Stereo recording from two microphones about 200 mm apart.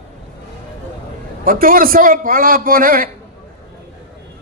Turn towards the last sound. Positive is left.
turn(degrees=-45)  # may be behind; listen again after turning